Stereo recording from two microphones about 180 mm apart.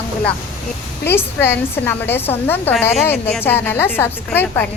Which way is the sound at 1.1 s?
10° left (ahead or behind).